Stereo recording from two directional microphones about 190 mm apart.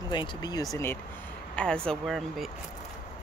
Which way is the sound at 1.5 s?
5° left (ahead or behind).